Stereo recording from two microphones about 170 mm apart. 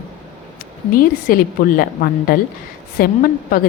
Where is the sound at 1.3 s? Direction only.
55° left (ahead or behind).